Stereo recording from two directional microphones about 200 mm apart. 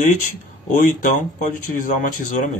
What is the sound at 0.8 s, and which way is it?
Speech, 40° left (ahead or behind).